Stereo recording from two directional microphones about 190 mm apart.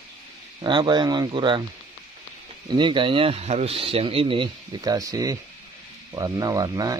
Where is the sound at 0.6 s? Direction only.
25° right (ahead or behind).